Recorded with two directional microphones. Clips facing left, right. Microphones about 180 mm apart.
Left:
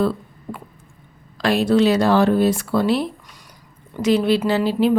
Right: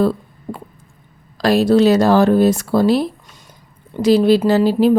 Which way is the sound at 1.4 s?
40° right (ahead or behind).